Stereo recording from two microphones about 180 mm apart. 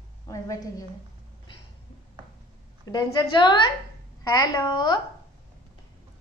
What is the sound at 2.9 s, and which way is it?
A woman's voice, 20° left (ahead or behind).